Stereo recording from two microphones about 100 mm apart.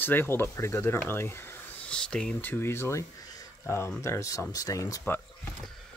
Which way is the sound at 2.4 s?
20° left (ahead or behind).